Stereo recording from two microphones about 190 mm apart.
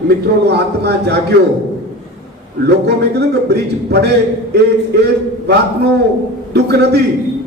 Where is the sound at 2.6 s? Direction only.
60° right (ahead or behind).